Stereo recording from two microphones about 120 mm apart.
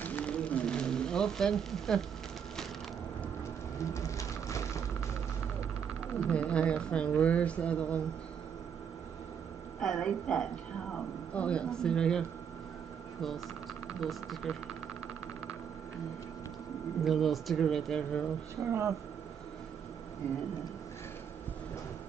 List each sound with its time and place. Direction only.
0.0 s a sound: 10° left (ahead or behind)
3.9 s a sound: 25° left (ahead or behind)
6.3 s a woman's voice: 10° left (ahead or behind)
9.8 s a woman's voice: 5° left (ahead or behind)
13.8 s speech: centre (ahead or behind)
17.0 s speech: centre (ahead or behind)
18.7 s speech: 25° right (ahead or behind)